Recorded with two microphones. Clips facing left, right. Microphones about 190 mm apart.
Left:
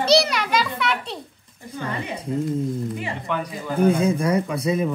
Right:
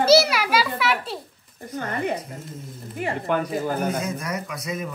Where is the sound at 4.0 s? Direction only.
30° left (ahead or behind).